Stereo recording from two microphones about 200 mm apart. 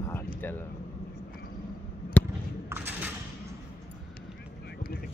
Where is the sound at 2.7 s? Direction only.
10° right (ahead or behind).